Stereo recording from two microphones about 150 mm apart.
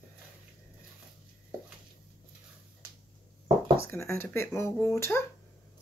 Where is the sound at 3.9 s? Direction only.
20° left (ahead or behind).